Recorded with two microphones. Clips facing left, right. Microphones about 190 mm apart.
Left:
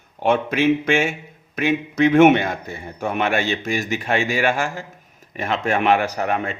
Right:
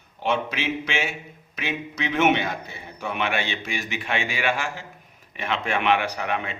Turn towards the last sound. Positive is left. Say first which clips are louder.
# left 5 dB
turn(degrees=45)  # may be behind; listen again after turning